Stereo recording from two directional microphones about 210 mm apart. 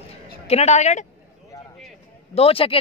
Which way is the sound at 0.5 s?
30° left (ahead or behind).